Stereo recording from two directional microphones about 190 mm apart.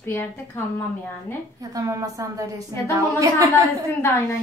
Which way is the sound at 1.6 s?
20° right (ahead or behind).